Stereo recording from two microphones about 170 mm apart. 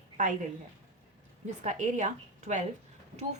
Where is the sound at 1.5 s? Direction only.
45° right (ahead or behind).